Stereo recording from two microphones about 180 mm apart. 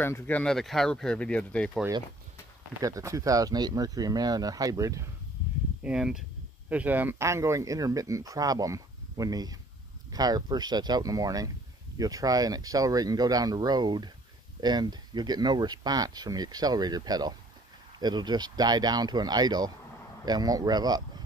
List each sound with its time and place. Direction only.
0.0 s speech: 10° left (ahead or behind)
2.8 s speech: 20° right (ahead or behind)
5.9 s speech: 5° right (ahead or behind); by 21.0 s 20° right (ahead or behind)